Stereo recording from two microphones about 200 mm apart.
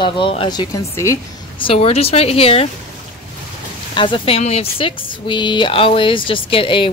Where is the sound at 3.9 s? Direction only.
25° left (ahead or behind).